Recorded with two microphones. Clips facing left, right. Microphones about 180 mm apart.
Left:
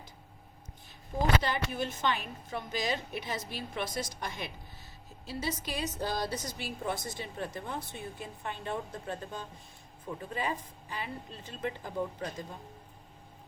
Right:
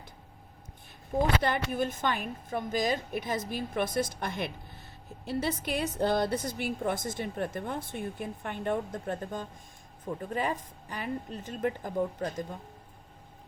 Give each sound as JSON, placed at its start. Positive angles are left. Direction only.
{"t": 1.4, "sound": "a woman's voice", "side_deg": -55}